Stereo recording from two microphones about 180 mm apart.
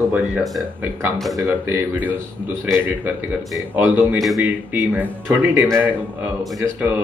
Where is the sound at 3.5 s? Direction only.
10° right (ahead or behind).